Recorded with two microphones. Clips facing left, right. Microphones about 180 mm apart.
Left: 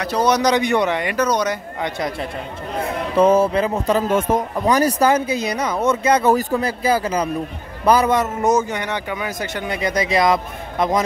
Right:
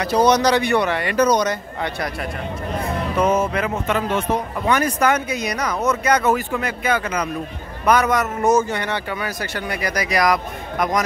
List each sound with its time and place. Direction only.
0.0 s a man's voice: centre (ahead or behind)
0.4 s speech: 15° left (ahead or behind)
1.1 s speech: centre (ahead or behind); by 2.1 s 20° left (ahead or behind)
3.2 s a man's voice: 30° left (ahead or behind)